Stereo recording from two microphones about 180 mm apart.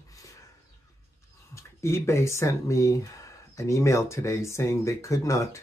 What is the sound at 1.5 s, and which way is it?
Speech, 15° left (ahead or behind).